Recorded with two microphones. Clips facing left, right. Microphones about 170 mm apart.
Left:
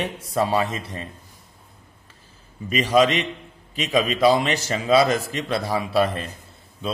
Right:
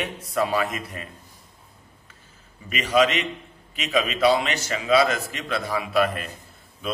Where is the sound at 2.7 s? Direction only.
35° left (ahead or behind).